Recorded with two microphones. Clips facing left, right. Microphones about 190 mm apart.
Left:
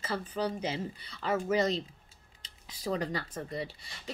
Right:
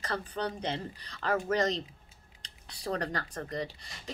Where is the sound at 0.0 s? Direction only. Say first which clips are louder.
Left 1 dB; 5° left (ahead or behind).